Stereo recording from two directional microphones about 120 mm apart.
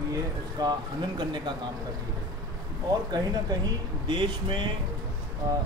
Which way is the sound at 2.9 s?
35° right (ahead or behind).